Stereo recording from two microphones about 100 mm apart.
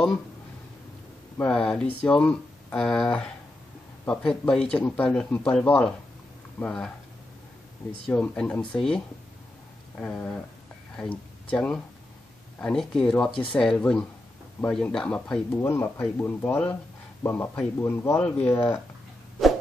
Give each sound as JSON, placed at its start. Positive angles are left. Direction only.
{"t": 1.5, "sound": "speech", "side_deg": 5}
{"t": 8.1, "sound": "speech", "side_deg": 10}
{"t": 15.6, "sound": "speech", "side_deg": 25}